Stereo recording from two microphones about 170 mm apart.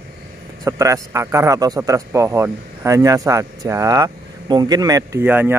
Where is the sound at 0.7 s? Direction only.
20° right (ahead or behind).